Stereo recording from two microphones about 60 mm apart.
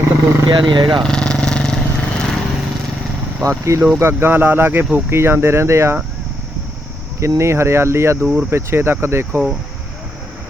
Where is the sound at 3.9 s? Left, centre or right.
Right.